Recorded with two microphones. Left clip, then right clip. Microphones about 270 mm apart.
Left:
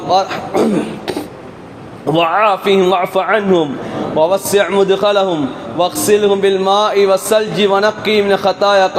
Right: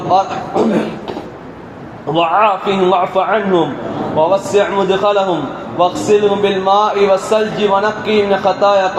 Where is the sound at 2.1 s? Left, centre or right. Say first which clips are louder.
Even; left.